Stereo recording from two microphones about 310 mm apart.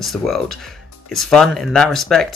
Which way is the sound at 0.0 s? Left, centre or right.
Centre.